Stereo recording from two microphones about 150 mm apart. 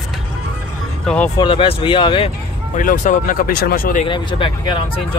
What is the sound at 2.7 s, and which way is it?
Speech, 55° left (ahead or behind).